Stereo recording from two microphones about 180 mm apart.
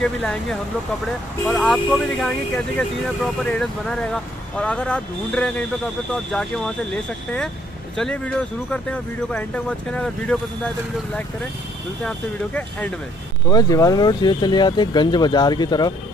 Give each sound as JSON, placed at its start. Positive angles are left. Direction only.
{"t": 0.0, "sound": "speech", "side_deg": 5}
{"t": 7.9, "sound": "speech", "side_deg": 5}
{"t": 13.5, "sound": "speech", "side_deg": 20}